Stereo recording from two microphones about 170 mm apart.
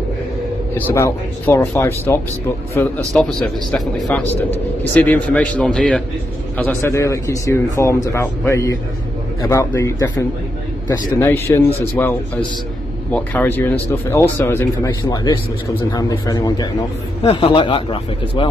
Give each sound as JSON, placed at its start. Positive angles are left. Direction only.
{"t": 0.7, "sound": "a man's voice", "side_deg": 15}